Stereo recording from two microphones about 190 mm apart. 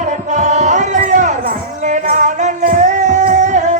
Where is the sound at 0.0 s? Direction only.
40° right (ahead or behind).